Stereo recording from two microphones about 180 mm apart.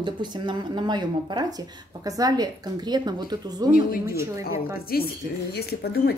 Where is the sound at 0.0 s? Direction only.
25° right (ahead or behind).